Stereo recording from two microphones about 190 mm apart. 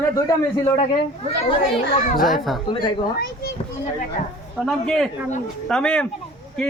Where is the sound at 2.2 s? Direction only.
Centre (ahead or behind).